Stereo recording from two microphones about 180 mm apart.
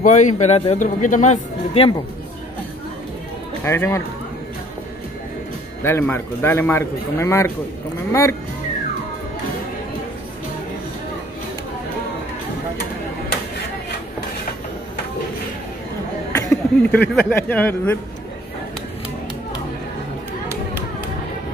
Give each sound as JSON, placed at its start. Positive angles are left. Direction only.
{"t": 0.0, "sound": "speech", "side_deg": 45}
{"t": 3.6, "sound": "a man's voice", "side_deg": 15}
{"t": 5.9, "sound": "a man's voice", "side_deg": 15}
{"t": 16.4, "sound": "speech", "side_deg": 5}